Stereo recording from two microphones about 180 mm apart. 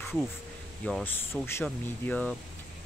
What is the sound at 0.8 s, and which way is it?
Speech, 5° left (ahead or behind).